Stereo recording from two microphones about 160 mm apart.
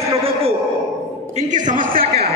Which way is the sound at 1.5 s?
55° right (ahead or behind).